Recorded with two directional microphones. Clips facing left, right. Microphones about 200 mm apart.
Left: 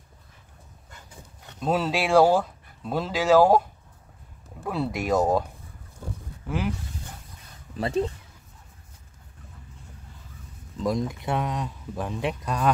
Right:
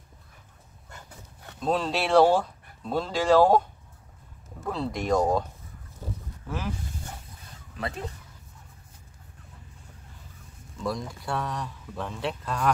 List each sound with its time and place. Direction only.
1.6 s speech: 5° left (ahead or behind)
10.8 s speech: 20° left (ahead or behind)